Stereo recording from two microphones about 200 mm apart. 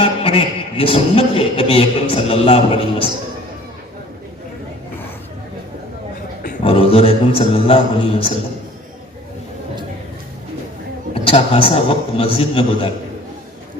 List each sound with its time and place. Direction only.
0.0 s a man's voice: 25° left (ahead or behind)
6.7 s a man's voice: 30° left (ahead or behind)
11.1 s a man's voice: 30° left (ahead or behind)